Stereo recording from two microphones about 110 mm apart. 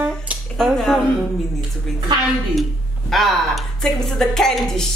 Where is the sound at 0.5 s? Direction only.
5° left (ahead or behind).